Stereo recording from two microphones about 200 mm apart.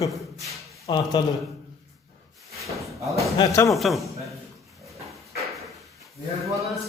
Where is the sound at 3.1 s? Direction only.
15° left (ahead or behind).